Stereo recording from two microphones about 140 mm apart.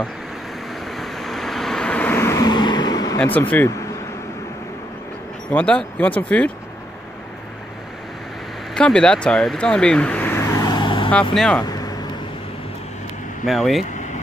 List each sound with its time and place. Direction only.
0.8 s vehicle: centre (ahead or behind); by 3.2 s 30° left (ahead or behind)
3.3 s speech: 15° left (ahead or behind)
5.5 s speech: 10° left (ahead or behind)
8.7 s vehicle: 5° left (ahead or behind); by 11.1 s 35° left (ahead or behind)
11.1 s speech: 5° left (ahead or behind)
11.6 s vehicle: 25° left (ahead or behind)
13.5 s speech: centre (ahead or behind)